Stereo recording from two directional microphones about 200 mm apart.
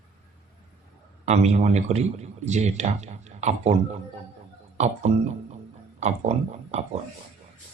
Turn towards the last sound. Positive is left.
turn(degrees=-35)  # may be behind; listen again after turning